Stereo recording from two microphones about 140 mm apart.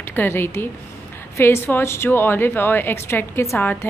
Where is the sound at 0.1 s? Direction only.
15° left (ahead or behind).